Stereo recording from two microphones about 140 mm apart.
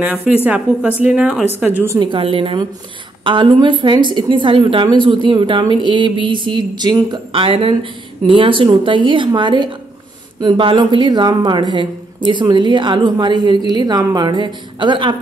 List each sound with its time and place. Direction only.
0.0 s a woman's voice: 10° right (ahead or behind)
2.0 s speech: 35° right (ahead or behind)